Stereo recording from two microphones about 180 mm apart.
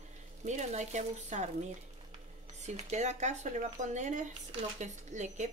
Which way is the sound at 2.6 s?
40° right (ahead or behind).